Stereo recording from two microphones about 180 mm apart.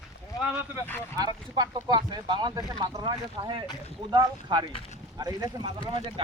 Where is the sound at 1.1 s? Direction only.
20° right (ahead or behind).